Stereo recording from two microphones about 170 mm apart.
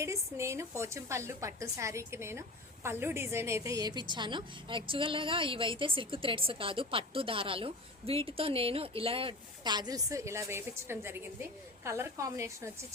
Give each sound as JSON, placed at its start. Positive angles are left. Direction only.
{"t": 0.0, "sound": "a woman's voice", "side_deg": -15}